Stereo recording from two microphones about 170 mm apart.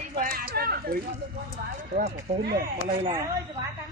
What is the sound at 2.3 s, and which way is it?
Speech, 40° right (ahead or behind).